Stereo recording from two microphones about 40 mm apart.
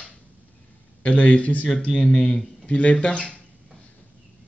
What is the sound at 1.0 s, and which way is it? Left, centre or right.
Speech, left.